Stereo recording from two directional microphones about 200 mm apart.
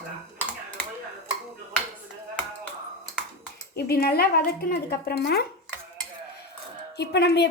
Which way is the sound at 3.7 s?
50° left (ahead or behind).